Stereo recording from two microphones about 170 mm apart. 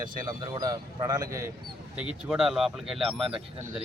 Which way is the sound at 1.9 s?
5° right (ahead or behind).